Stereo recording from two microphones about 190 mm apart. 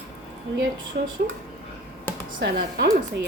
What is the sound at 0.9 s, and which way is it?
Speech, 55° right (ahead or behind).